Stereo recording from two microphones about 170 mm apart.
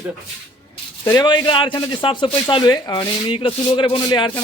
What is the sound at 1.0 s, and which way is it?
A man's voice, 20° left (ahead or behind).